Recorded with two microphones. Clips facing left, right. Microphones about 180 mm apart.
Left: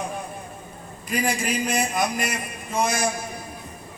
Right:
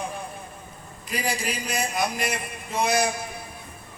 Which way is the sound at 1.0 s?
50° left (ahead or behind).